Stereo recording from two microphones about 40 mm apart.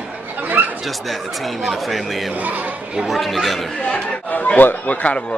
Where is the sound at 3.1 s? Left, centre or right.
Centre.